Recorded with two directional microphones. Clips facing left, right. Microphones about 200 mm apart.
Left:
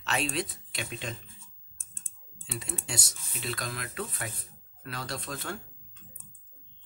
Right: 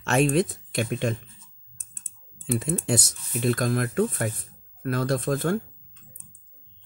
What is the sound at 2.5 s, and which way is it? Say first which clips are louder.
Speech: right 13 dB; 50° right (ahead or behind).